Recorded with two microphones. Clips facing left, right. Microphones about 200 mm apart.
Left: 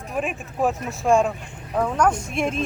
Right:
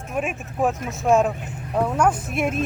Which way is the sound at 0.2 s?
Centre (ahead or behind).